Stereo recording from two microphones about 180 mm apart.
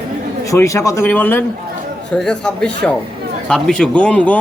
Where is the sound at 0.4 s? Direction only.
15° left (ahead or behind).